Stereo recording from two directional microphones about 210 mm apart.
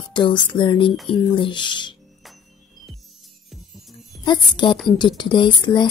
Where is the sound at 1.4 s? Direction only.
20° left (ahead or behind).